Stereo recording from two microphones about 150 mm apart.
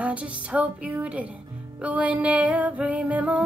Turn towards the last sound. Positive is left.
turn(degrees=-10)  # may be behind; listen again after turning